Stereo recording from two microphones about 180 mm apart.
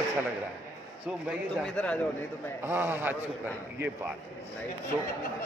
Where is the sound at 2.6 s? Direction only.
10° right (ahead or behind).